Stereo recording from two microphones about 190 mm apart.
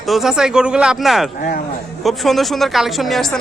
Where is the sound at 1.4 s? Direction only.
50° left (ahead or behind).